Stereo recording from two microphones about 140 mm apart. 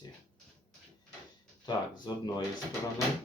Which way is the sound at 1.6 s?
30° left (ahead or behind).